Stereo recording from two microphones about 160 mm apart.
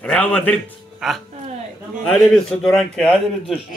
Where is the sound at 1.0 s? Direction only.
Centre (ahead or behind).